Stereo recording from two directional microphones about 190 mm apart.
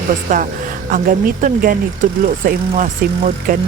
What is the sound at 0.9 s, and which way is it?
Speech, 45° right (ahead or behind).